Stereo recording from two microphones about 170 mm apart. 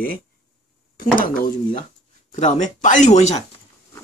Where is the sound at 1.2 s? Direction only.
55° left (ahead or behind).